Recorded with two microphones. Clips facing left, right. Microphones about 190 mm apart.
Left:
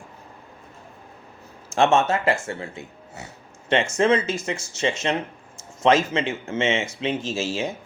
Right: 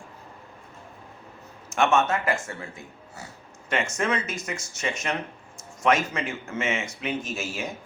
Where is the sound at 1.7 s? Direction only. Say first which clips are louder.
Left 3 dB; 30° left (ahead or behind).